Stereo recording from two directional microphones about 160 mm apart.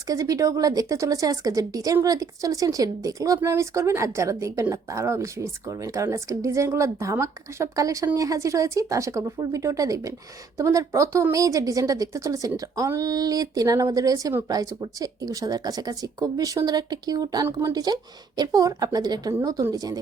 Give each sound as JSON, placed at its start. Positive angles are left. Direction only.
{"t": 0.1, "sound": "a woman's voice", "side_deg": -20}